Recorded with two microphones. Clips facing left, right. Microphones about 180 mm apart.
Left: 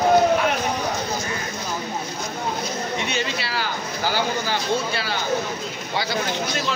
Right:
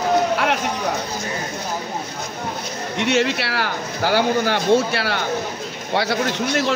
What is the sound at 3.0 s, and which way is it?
Speech, 75° right (ahead or behind).